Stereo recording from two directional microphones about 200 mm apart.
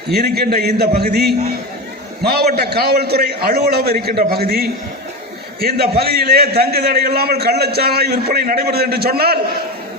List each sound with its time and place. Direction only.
0.1 s a man's voice: 55° right (ahead or behind)